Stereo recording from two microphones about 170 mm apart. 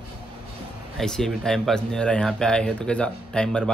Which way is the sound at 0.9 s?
5° left (ahead or behind).